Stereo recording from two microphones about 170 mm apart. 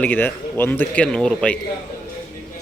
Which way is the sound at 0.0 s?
10° left (ahead or behind).